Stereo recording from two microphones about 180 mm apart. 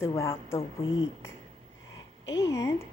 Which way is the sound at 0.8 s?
90° left.